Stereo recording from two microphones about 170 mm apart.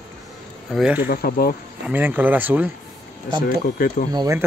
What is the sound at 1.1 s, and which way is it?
Speech, 60° left (ahead or behind).